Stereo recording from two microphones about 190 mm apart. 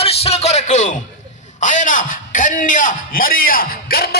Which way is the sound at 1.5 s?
40° left (ahead or behind).